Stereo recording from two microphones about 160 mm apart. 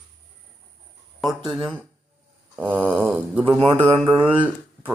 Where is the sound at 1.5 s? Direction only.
10° right (ahead or behind).